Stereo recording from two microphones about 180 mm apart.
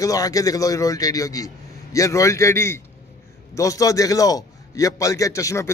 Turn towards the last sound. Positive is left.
turn(degrees=15)  # may be behind; listen again after turning